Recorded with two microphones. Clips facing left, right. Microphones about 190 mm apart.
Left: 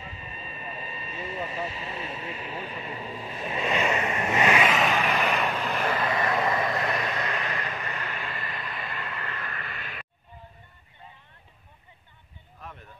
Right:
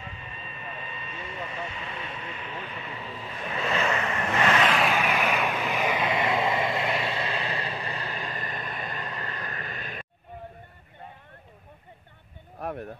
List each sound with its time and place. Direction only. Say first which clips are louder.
0.1 s vehicle: left 1 dB; 35° left (ahead or behind)
2.5 s speech: left 2 dB; 35° left (ahead or behind)
3.1 s vehicle: even; 15° left (ahead or behind)
4.8 s vehicle: even; centre (ahead or behind)
6.0 s vehicle: even; 20° right (ahead or behind); by 10.0 s 40° right (ahead or behind)
12.5 s a sound: right 12 dB; 65° right (ahead or behind)